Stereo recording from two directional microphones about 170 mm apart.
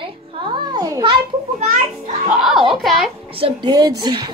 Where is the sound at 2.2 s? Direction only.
Centre (ahead or behind).